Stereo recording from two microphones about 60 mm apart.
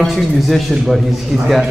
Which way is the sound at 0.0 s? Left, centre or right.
Centre.